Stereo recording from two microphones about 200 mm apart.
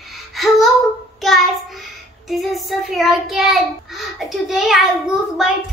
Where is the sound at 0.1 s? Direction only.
Centre (ahead or behind).